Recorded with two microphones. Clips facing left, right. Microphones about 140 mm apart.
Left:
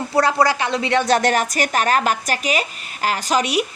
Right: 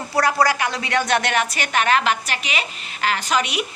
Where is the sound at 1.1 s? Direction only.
40° left (ahead or behind).